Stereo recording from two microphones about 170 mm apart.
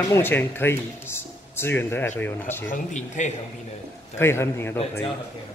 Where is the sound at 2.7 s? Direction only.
45° left (ahead or behind).